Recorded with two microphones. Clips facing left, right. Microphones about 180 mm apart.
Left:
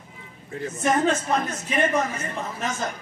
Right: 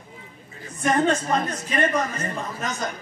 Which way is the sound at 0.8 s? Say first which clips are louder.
Right 1 dB; 5° left (ahead or behind).